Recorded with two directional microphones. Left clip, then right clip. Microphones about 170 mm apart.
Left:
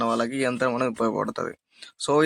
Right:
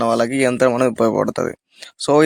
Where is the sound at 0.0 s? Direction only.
40° right (ahead or behind).